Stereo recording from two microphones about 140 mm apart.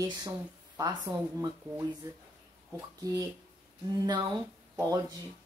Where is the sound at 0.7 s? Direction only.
25° right (ahead or behind).